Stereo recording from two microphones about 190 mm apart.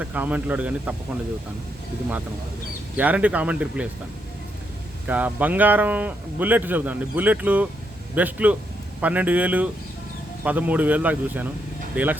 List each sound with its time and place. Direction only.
0.0 s speech: 10° right (ahead or behind)
2.9 s speech: 10° right (ahead or behind)
5.0 s speech: 10° right (ahead or behind)